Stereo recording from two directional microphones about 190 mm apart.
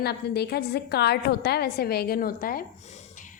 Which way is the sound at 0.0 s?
60° left (ahead or behind).